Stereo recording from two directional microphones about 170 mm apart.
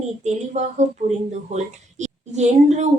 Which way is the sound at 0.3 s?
45° right (ahead or behind).